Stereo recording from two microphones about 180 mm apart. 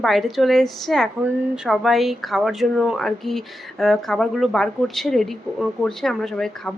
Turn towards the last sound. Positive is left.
turn(degrees=0)  # may be behind; listen again after turning